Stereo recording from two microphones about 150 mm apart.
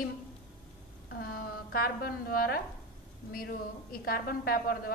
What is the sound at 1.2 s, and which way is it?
A woman's voice, 85° left.